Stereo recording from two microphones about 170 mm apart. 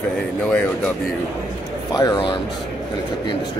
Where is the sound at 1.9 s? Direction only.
25° left (ahead or behind).